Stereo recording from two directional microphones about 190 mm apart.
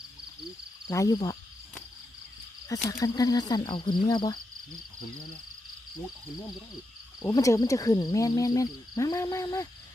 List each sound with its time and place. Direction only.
0.9 s speech: 15° left (ahead or behind)
2.7 s speech: 15° left (ahead or behind)
7.2 s speech: 20° left (ahead or behind)